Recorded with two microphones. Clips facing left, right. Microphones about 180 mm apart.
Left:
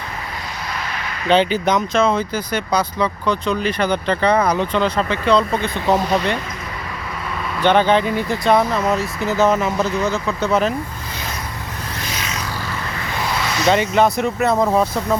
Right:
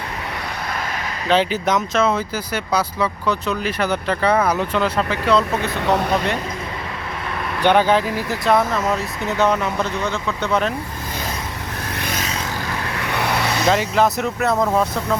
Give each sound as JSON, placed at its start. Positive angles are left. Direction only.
{"t": 1.3, "sound": "speech", "side_deg": 0}
{"t": 7.6, "sound": "speech", "side_deg": -10}
{"t": 11.9, "sound": "music", "side_deg": -55}
{"t": 13.0, "sound": "vehicle", "side_deg": -65}
{"t": 13.7, "sound": "speech", "side_deg": 0}